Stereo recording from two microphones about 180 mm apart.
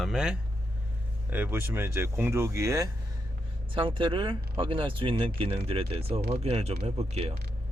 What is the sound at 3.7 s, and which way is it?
Speech, 30° right (ahead or behind).